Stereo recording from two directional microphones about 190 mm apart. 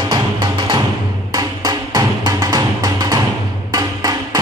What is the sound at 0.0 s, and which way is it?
Music, 25° right (ahead or behind).